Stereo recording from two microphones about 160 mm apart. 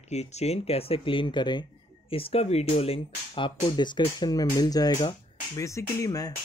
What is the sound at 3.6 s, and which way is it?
Speech, 25° left (ahead or behind).